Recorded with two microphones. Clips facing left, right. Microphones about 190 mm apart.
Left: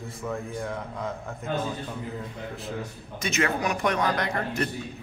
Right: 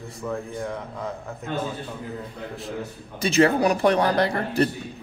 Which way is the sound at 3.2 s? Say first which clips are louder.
Right 8 dB; 35° right (ahead or behind).